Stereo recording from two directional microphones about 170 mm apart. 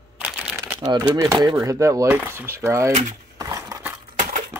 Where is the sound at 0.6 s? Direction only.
20° right (ahead or behind).